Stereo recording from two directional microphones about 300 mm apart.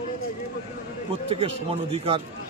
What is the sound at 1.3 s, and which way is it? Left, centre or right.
Speech, centre.